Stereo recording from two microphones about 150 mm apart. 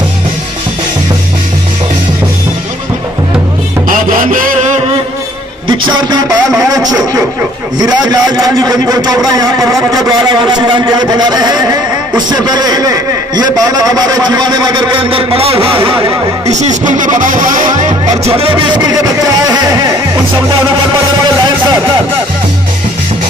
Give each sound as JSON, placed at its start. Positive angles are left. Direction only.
{"t": 3.9, "sound": "a sound", "side_deg": -65}
{"t": 5.7, "sound": "music", "side_deg": -30}
{"t": 6.6, "sound": "a man's voice", "side_deg": -25}
{"t": 16.5, "sound": "speech", "side_deg": -55}
{"t": 18.2, "sound": "speech", "side_deg": -40}